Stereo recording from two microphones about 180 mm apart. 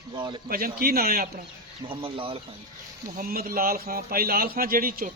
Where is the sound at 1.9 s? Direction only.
30° right (ahead or behind).